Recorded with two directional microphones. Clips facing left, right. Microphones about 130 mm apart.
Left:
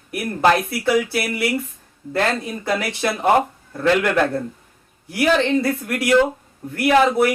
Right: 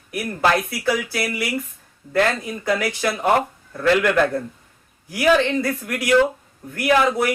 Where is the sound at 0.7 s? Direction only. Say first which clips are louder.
Left 4 dB; 25° left (ahead or behind).